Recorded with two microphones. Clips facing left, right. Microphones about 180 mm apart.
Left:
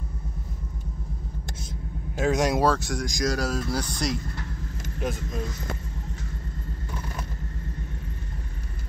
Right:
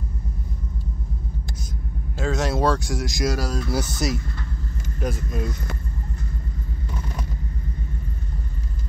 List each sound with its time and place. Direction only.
2.1 s speech: 15° left (ahead or behind)
2.7 s speech: centre (ahead or behind)